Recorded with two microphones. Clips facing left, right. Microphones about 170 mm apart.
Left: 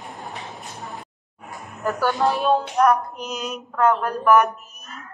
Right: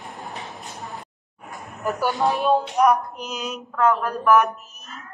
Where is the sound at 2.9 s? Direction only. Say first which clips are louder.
Even; 5° right (ahead or behind).